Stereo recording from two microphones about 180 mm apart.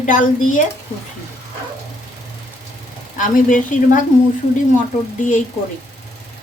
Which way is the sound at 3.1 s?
45° left (ahead or behind).